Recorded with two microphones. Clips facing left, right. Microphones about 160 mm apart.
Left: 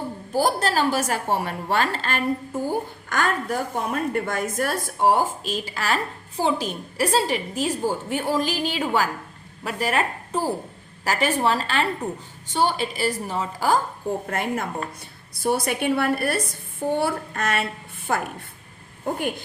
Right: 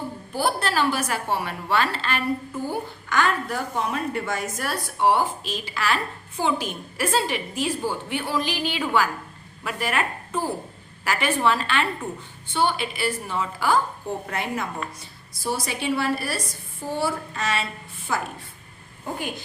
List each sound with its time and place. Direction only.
0.3 s a woman's voice: 40° left (ahead or behind)